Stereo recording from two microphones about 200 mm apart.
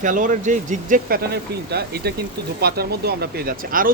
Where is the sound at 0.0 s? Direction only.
40° right (ahead or behind).